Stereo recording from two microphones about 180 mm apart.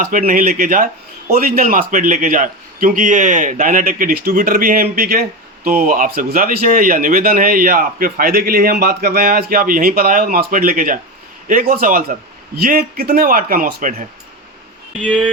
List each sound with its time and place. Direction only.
0.0 s speech: 50° right (ahead or behind)